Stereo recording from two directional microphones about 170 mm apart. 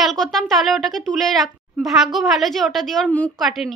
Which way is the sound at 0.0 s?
Centre (ahead or behind).